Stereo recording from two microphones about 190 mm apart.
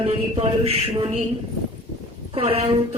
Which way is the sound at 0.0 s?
30° right (ahead or behind).